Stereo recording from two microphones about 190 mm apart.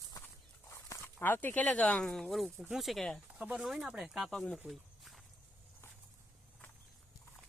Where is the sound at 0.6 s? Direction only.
15° left (ahead or behind).